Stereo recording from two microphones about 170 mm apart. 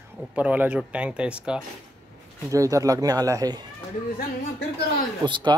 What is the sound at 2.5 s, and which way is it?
Speech, 20° right (ahead or behind).